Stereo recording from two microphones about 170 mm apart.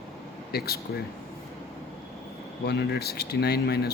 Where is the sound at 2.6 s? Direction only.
70° left (ahead or behind).